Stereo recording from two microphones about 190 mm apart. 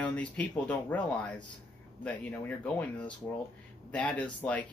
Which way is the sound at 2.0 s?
5° left (ahead or behind).